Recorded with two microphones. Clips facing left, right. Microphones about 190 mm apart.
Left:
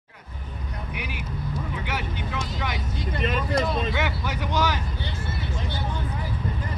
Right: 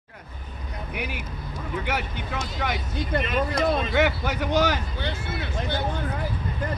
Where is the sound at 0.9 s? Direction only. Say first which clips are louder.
Right 5 dB; 50° right (ahead or behind).